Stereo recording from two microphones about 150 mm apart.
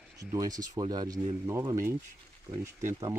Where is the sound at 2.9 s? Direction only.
25° right (ahead or behind).